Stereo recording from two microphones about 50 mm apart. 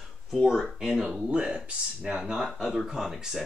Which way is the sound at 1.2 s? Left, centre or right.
Right.